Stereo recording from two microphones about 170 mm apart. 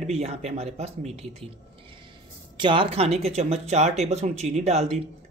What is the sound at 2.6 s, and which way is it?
A man's voice, 30° right (ahead or behind).